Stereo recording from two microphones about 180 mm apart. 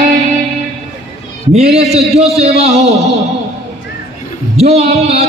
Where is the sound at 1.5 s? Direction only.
35° right (ahead or behind).